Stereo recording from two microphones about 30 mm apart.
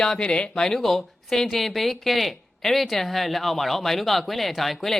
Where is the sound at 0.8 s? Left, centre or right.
Centre.